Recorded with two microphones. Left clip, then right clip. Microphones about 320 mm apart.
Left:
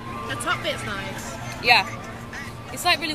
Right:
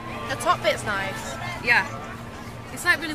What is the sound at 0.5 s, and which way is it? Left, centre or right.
Speech, centre.